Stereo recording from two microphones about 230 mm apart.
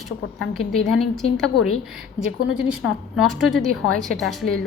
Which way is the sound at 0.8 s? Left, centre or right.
Centre.